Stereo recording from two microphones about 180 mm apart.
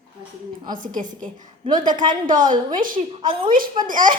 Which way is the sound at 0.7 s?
50° right (ahead or behind).